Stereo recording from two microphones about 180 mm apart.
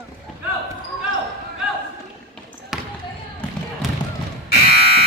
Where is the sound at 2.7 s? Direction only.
Centre (ahead or behind).